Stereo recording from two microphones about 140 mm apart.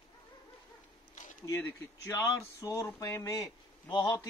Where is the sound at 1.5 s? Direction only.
20° left (ahead or behind).